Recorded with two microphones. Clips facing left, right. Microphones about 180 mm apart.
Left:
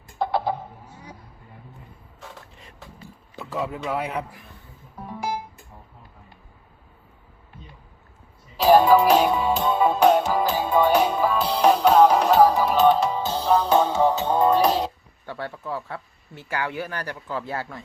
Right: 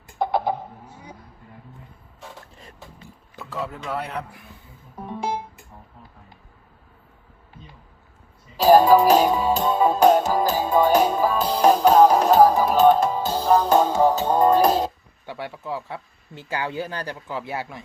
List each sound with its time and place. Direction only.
0.2 s a sound: 20° right (ahead or behind)
3.3 s a man's voice: 10° left (ahead or behind)
4.9 s music: 25° right (ahead or behind)
8.6 s music: 40° right (ahead or behind)
13.1 s music: 10° right (ahead or behind)
13.4 s music: 45° right (ahead or behind)
14.1 s speech: 10° right (ahead or behind)
14.3 s music: 40° right (ahead or behind)
15.3 s speech: 15° right (ahead or behind)
16.5 s speech: 25° right (ahead or behind)
17.2 s speech: 15° right (ahead or behind)